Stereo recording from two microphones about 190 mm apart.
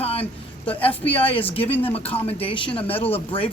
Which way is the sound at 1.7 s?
10° left (ahead or behind).